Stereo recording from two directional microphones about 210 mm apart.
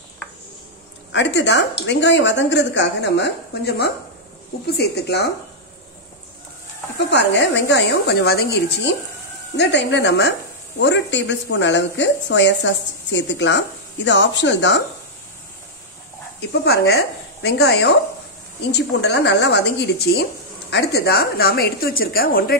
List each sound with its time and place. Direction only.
1.1 s a woman's voice: 60° left (ahead or behind)
7.1 s speech: 55° left (ahead or behind)
16.3 s a woman's voice: 50° left (ahead or behind)